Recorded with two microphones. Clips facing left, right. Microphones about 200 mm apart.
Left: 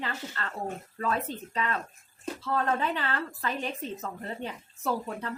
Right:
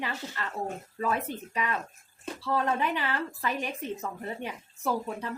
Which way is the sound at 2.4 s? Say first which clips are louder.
Right 1 dB; 15° right (ahead or behind).